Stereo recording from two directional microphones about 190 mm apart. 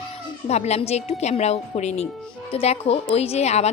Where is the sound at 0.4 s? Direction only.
35° left (ahead or behind).